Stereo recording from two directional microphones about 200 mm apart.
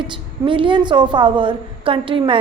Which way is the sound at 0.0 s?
25° right (ahead or behind).